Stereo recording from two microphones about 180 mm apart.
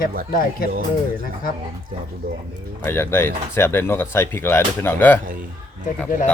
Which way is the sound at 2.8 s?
15° left (ahead or behind).